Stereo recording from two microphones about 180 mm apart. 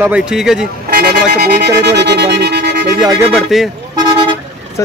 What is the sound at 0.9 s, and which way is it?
Speech, 60° right (ahead or behind).